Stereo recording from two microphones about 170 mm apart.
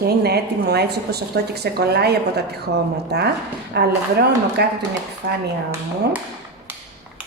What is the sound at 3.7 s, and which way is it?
Speech, 80° right.